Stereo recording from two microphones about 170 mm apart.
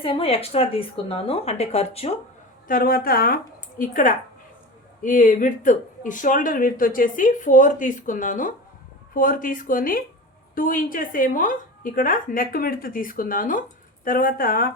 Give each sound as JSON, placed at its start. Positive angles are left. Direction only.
{"t": 0.0, "sound": "speech", "side_deg": 35}
{"t": 2.6, "sound": "a woman's voice", "side_deg": 55}